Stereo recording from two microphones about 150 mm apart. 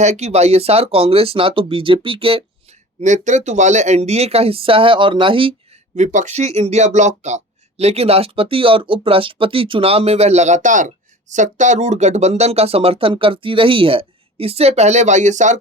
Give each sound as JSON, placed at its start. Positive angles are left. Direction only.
{"t": 0.0, "sound": "speech", "side_deg": -50}
{"t": 3.0, "sound": "speech", "side_deg": -55}
{"t": 6.0, "sound": "speech", "side_deg": -55}